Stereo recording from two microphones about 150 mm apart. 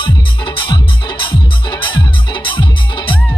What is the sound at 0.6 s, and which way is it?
Music, 35° left (ahead or behind).